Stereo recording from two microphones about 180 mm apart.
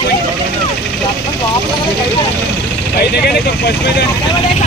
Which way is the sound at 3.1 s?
60° left (ahead or behind).